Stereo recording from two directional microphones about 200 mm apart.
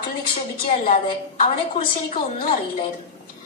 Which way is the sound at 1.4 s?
40° left (ahead or behind).